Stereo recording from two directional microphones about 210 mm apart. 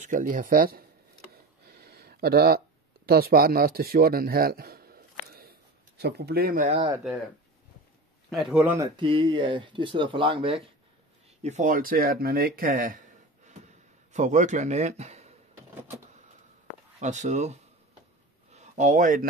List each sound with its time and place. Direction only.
0.0 s speech: 40° right (ahead or behind)
1.3 s a sound: 50° right (ahead or behind)
3.1 s speech: 45° right (ahead or behind)
8.3 s speech: centre (ahead or behind); by 13.0 s 40° right (ahead or behind)
14.1 s a man's voice: 35° right (ahead or behind)
17.0 s speech: 35° right (ahead or behind)
18.5 s a sound: 35° right (ahead or behind)